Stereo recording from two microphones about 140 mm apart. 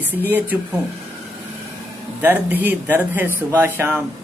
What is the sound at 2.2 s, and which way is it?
Speech, 15° right (ahead or behind).